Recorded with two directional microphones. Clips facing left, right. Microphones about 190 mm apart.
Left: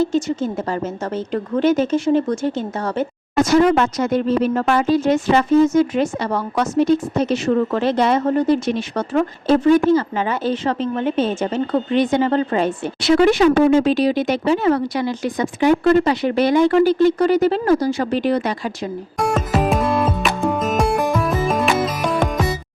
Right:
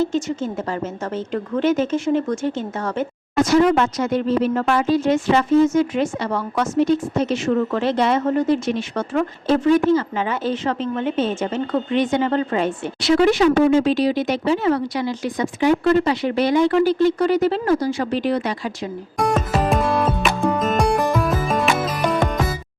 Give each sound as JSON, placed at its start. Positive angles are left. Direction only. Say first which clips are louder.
{"t": 0.0, "sound": "a woman's voice", "louder": "left 2 dB", "side_deg": 35}
{"t": 13.0, "sound": "speech", "louder": "left 2 dB", "side_deg": 55}
{"t": 19.2, "sound": "music", "louder": "left 1 dB", "side_deg": 0}